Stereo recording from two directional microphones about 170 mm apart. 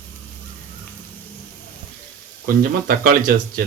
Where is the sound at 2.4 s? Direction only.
60° right (ahead or behind).